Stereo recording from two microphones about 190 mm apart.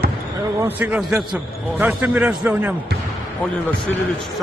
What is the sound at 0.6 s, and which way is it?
A man's voice, 10° right (ahead or behind).